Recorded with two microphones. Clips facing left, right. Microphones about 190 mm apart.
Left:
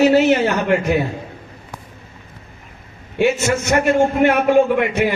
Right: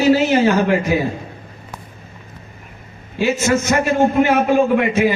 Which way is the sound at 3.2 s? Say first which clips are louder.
Even; 65° left (ahead or behind).